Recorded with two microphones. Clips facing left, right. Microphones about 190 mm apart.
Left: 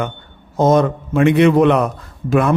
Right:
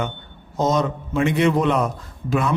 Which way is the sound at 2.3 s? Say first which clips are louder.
Left 6 dB; 55° left (ahead or behind).